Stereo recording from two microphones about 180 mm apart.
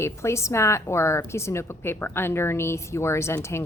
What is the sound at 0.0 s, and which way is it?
A woman's voice, 15° left (ahead or behind).